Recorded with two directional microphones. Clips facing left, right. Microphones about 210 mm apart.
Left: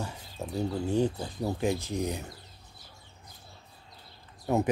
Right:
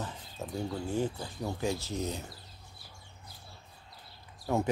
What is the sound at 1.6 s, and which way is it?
Speech, 15° left (ahead or behind).